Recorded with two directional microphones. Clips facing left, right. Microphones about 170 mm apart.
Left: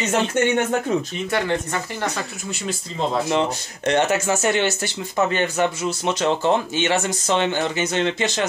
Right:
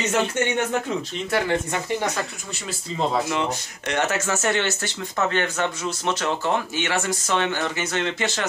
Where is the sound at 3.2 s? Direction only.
30° left (ahead or behind).